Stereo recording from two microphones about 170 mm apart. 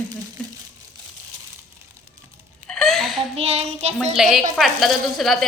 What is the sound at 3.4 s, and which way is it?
Child singing, 35° right (ahead or behind).